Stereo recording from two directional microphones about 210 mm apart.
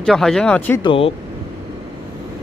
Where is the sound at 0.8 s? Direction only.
25° left (ahead or behind).